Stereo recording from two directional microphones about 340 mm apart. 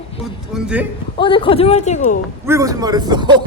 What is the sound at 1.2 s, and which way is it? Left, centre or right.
A woman's voice, centre.